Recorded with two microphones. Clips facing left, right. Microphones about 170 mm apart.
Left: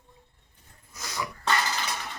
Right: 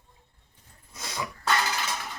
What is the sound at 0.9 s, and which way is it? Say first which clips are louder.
Dog: even; 25° right (ahead or behind).